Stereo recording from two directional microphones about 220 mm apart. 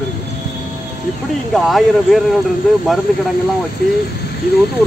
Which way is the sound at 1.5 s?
Centre (ahead or behind).